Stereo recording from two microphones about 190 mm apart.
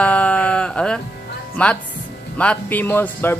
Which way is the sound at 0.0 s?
5° left (ahead or behind).